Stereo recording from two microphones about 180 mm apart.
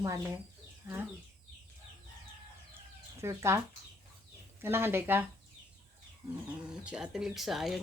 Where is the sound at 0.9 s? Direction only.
15° right (ahead or behind).